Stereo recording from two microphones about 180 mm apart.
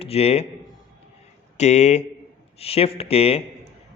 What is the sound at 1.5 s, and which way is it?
A man's voice, 40° left (ahead or behind).